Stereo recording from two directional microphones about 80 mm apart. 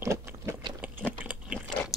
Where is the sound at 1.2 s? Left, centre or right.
Centre.